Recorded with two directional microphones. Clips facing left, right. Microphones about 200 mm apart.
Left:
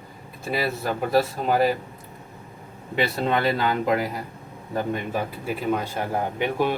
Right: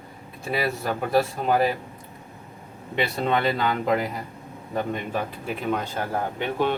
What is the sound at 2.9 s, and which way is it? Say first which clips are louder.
Speech: left 1 dB; centre (ahead or behind).